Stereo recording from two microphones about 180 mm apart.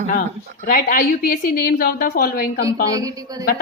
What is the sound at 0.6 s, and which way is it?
A woman's voice, 55° left (ahead or behind).